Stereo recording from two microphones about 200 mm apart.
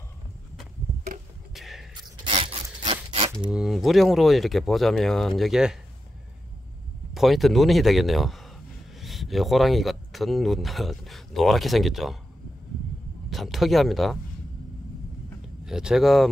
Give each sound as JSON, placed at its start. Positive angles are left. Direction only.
{"t": 1.5, "sound": "a sound", "side_deg": 0}
{"t": 2.0, "sound": "a sound", "side_deg": -25}
{"t": 3.5, "sound": "speech", "side_deg": 0}
{"t": 7.2, "sound": "speech", "side_deg": 0}
{"t": 13.3, "sound": "speech", "side_deg": 0}
{"t": 15.6, "sound": "speech", "side_deg": -5}